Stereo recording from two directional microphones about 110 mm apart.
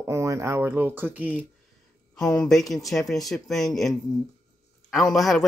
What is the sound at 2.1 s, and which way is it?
Speech, 10° left (ahead or behind).